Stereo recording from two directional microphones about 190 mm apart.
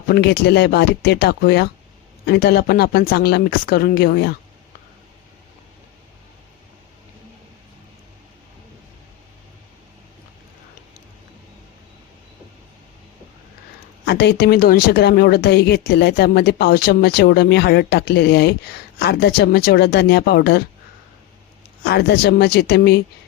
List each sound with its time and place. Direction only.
0.1 s a woman's voice: 60° left (ahead or behind)
14.0 s a woman's voice: 60° left (ahead or behind)
21.8 s a woman's voice: 60° left (ahead or behind)